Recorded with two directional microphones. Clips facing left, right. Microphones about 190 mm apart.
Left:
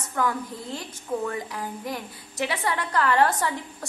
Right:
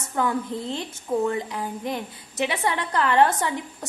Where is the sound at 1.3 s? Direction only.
25° right (ahead or behind).